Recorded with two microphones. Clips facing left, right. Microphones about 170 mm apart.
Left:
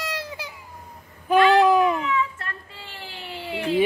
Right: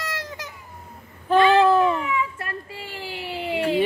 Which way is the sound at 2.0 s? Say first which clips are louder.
Left 1 dB; 10° right (ahead or behind).